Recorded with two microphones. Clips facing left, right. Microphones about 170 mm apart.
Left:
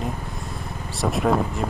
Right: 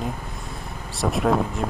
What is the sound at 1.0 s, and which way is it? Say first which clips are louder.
Speech: even; centre (ahead or behind).